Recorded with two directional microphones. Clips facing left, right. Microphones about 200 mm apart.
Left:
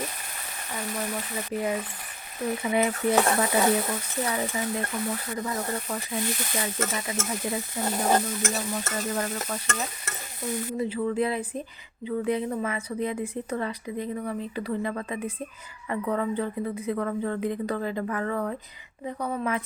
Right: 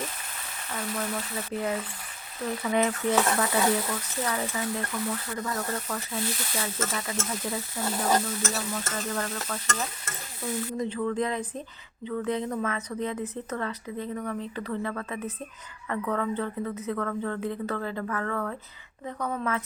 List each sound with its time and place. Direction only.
0.7 s speech: 15° left (ahead or behind)